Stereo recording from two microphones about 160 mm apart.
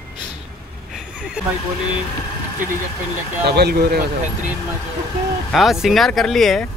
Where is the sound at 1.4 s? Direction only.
5° right (ahead or behind).